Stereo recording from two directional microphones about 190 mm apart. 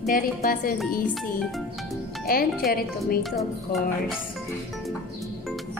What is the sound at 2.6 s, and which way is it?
Speech, 50° left (ahead or behind).